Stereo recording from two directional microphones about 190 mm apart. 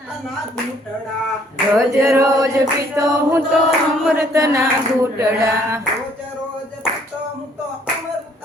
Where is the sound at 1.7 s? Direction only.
15° right (ahead or behind).